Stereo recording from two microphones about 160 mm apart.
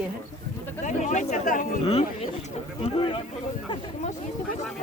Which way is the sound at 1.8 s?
40° left (ahead or behind).